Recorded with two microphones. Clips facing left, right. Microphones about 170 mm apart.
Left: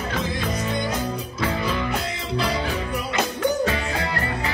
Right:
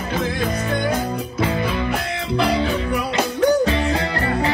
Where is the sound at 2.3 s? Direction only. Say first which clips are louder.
Right 6 dB; 65° right (ahead or behind).